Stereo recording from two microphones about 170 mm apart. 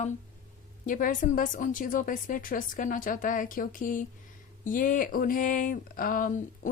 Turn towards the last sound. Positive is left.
turn(degrees=55)  # may be behind; listen again after turning